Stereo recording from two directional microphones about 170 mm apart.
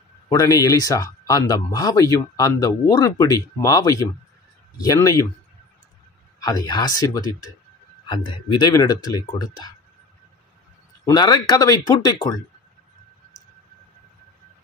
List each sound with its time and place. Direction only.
0.3 s speech: 20° left (ahead or behind)
6.4 s speech: 25° left (ahead or behind)
11.1 s speech: 25° left (ahead or behind)